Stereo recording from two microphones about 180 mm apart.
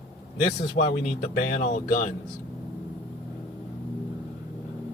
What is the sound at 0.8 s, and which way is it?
Speech, 75° left (ahead or behind).